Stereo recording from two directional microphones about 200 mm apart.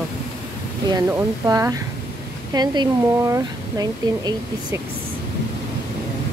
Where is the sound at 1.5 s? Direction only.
15° right (ahead or behind).